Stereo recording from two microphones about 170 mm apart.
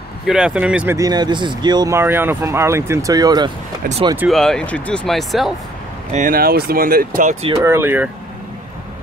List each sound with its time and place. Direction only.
0.3 s speech: 5° right (ahead or behind)
0.9 s speech: 25° right (ahead or behind)
4.3 s speech: 5° left (ahead or behind)
6.1 s speech: 55° right (ahead or behind)
7.5 s speech: 15° right (ahead or behind)